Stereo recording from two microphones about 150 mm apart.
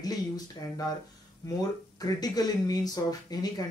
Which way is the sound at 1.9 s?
25° left (ahead or behind).